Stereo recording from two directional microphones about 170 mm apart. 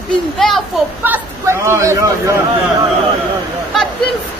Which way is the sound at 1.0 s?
15° right (ahead or behind).